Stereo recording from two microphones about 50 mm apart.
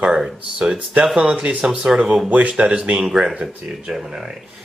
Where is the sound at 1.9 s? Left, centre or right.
Centre.